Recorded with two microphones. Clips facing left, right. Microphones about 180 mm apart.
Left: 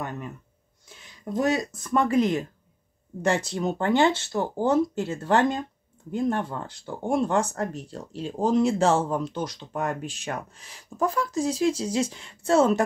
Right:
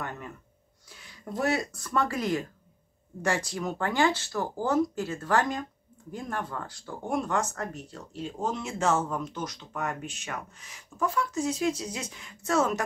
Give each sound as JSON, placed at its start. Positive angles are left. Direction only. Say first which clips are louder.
{"t": 0.8, "sound": "speech", "louder": "left 5 dB", "side_deg": 20}